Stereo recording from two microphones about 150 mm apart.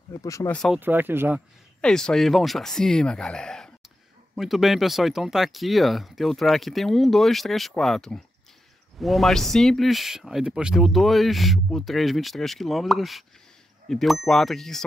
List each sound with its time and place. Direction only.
0.2 s speech: 20° left (ahead or behind)
0.5 s speech: 5° left (ahead or behind)
0.7 s speech: 15° right (ahead or behind)
1.8 s speech: 5° left (ahead or behind)